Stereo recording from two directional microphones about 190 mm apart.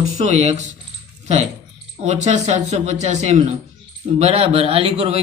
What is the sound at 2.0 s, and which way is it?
Speech, 40° right (ahead or behind).